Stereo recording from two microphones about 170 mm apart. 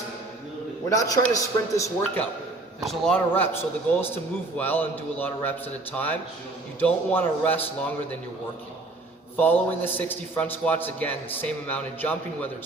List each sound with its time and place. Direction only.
0.9 s a man's voice: 20° left (ahead or behind)
2.8 s a man's voice: 5° left (ahead or behind)
9.4 s a man's voice: 10° left (ahead or behind)